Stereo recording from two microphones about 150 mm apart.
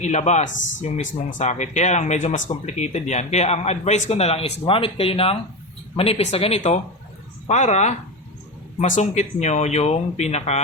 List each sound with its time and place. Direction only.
0.0 s speech: 50° left (ahead or behind)